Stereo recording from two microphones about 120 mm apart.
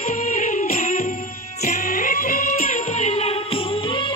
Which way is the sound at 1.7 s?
90° left.